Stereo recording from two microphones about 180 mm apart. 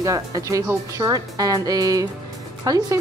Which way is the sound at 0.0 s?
15° right (ahead or behind).